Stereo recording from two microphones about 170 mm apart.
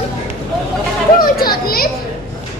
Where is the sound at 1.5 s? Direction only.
60° left (ahead or behind).